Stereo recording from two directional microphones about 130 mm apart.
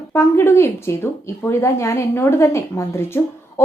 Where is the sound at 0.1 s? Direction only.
20° left (ahead or behind).